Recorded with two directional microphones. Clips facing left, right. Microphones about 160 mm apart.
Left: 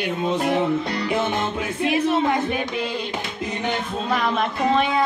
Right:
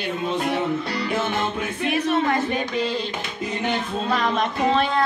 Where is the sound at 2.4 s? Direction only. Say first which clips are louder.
Right 1 dB; 10° left (ahead or behind).